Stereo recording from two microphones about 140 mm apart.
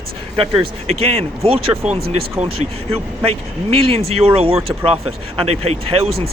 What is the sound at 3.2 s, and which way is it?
Speech, 45° right (ahead or behind).